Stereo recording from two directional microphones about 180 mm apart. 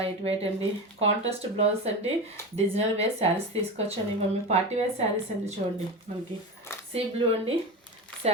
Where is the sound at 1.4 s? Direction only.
35° right (ahead or behind).